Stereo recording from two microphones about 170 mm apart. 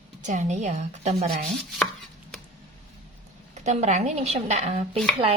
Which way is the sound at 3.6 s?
45° right (ahead or behind).